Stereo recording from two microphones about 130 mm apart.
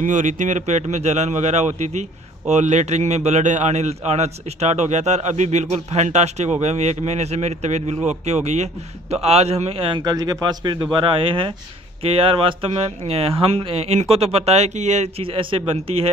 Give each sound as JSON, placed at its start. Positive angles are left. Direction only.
{"t": 0.0, "sound": "a man's voice", "side_deg": -80}
{"t": 9.1, "sound": "a man's voice", "side_deg": -55}
{"t": 15.2, "sound": "speech", "side_deg": -45}